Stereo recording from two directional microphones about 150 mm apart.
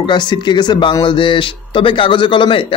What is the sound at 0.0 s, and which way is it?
Speech, 30° left (ahead or behind).